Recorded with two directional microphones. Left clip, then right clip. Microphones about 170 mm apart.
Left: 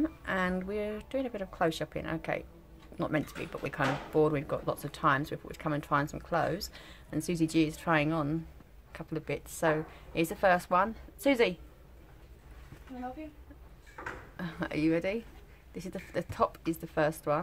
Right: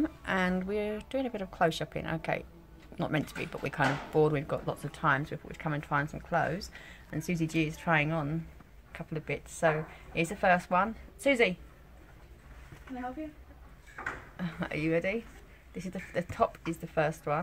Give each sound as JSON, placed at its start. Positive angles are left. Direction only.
{"t": 0.0, "sound": "speech", "side_deg": -15}
{"t": 5.2, "sound": "speech", "side_deg": 15}
{"t": 14.3, "sound": "speech", "side_deg": 15}